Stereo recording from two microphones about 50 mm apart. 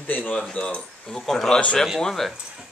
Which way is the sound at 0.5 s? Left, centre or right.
Centre.